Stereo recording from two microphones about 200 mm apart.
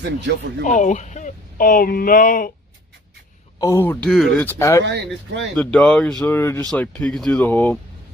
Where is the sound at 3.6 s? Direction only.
15° left (ahead or behind).